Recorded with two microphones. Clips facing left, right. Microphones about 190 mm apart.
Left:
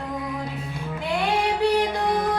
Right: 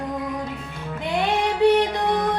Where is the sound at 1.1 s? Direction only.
20° right (ahead or behind).